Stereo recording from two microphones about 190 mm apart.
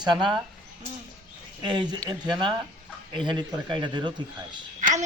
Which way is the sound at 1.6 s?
25° right (ahead or behind).